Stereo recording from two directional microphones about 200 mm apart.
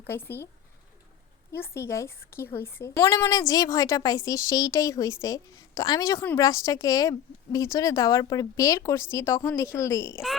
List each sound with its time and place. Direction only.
0.1 s a woman's voice: 10° left (ahead or behind)
1.5 s a woman's voice: 10° left (ahead or behind)